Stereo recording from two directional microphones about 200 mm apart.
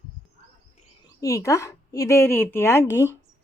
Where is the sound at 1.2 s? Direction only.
15° left (ahead or behind).